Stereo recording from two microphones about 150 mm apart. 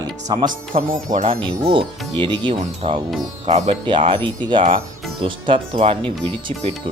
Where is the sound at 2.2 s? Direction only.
35° right (ahead or behind).